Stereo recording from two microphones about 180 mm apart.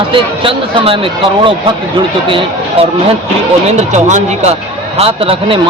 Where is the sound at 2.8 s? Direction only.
30° right (ahead or behind).